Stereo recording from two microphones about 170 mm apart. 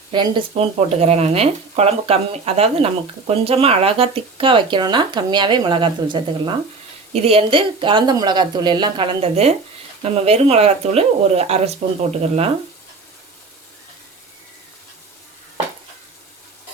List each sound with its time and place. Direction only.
0.1 s speech: 30° right (ahead or behind)